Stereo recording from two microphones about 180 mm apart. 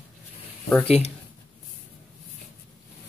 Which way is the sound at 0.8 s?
35° left (ahead or behind).